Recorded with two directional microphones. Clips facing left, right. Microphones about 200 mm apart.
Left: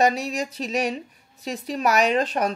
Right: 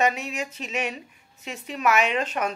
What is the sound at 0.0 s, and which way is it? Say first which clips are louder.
Speech: left 3 dB; 35° left (ahead or behind).